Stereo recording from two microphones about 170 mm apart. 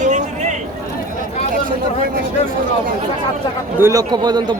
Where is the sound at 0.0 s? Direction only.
45° right (ahead or behind).